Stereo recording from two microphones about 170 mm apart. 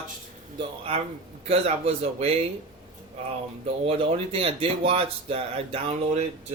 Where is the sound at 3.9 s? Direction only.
35° right (ahead or behind).